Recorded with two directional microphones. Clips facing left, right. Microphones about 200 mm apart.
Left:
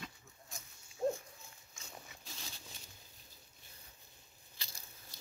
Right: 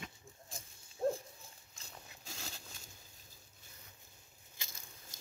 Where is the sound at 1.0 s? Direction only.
5° right (ahead or behind).